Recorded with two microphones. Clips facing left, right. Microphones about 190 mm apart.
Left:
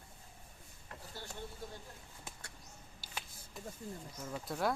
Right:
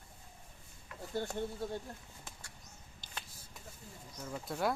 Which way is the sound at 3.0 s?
10° left (ahead or behind).